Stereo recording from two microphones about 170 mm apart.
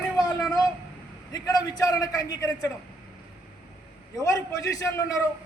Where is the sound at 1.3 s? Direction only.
20° left (ahead or behind).